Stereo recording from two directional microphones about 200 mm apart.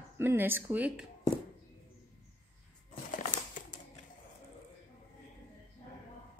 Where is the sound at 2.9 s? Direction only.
40° left (ahead or behind).